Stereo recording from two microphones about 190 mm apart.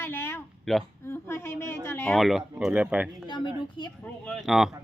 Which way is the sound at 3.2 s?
25° left (ahead or behind).